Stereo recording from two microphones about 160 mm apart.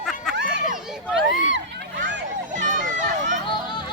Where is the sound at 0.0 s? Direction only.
Centre (ahead or behind).